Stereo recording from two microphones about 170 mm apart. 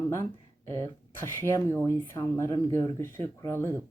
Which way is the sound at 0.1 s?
15° left (ahead or behind).